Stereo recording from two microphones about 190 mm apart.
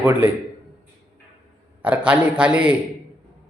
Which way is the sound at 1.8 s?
5° right (ahead or behind).